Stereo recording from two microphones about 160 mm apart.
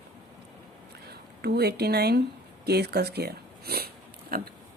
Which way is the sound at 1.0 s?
85° right.